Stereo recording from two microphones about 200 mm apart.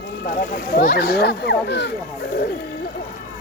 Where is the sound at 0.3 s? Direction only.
45° left (ahead or behind).